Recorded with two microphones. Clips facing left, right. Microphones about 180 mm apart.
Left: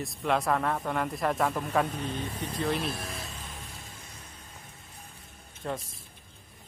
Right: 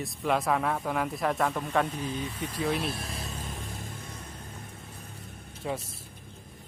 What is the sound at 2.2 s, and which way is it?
Speech, 45° left (ahead or behind).